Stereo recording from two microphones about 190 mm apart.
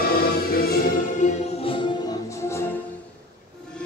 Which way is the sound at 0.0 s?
50° left (ahead or behind).